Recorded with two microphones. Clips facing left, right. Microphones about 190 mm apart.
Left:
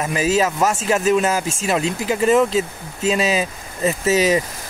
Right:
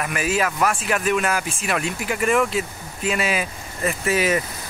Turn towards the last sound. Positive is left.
turn(degrees=25)  # may be behind; listen again after turning